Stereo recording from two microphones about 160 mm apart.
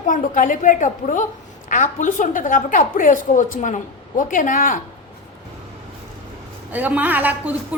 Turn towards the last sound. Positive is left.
turn(degrees=-10)  # may be behind; listen again after turning